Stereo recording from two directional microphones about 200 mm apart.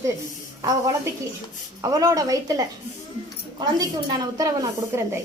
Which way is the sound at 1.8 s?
15° right (ahead or behind).